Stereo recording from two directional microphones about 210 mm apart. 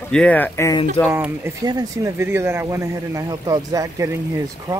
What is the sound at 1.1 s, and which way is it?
Speech, 10° right (ahead or behind).